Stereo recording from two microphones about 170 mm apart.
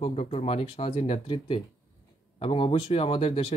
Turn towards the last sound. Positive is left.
turn(degrees=30)  # may be behind; listen again after turning